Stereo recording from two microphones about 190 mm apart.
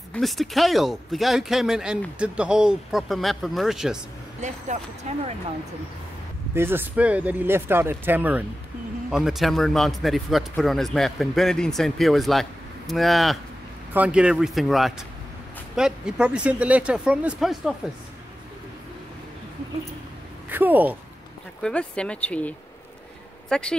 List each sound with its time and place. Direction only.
0.1 s speech: centre (ahead or behind)
4.4 s speech: 40° right (ahead or behind)
6.5 s speech: 10° right (ahead or behind)
20.4 s speech: 10° right (ahead or behind)
21.5 s speech: 5° left (ahead or behind)